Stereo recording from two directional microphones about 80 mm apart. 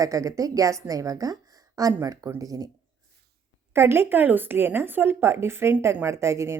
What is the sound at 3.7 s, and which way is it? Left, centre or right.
Speech, right.